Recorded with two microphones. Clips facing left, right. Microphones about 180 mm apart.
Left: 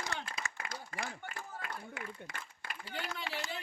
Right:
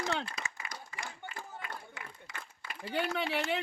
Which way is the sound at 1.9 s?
55° left (ahead or behind).